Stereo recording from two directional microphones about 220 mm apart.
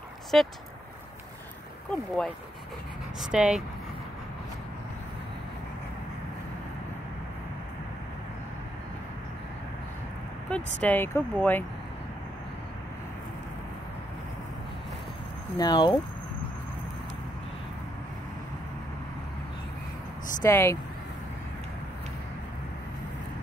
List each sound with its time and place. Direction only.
0.3 s speech: centre (ahead or behind)
1.9 s speech: 5° left (ahead or behind)
10.5 s speech: 5° left (ahead or behind)
15.5 s speech: 20° left (ahead or behind)
20.4 s speech: 10° left (ahead or behind)